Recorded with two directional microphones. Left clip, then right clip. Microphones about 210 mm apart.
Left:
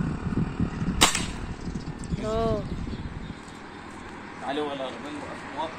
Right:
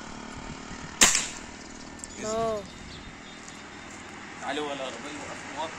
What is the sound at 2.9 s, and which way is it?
Vehicle, 20° right (ahead or behind).